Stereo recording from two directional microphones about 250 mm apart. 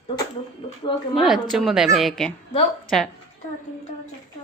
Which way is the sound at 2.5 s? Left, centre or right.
Left.